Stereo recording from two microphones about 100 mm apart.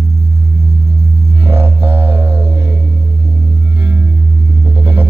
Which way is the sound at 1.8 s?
70° right (ahead or behind).